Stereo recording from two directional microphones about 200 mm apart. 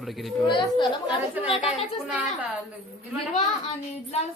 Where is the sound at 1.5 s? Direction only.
25° left (ahead or behind).